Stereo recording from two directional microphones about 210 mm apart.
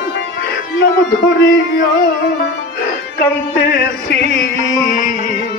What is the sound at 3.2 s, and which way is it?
Music, 50° left (ahead or behind).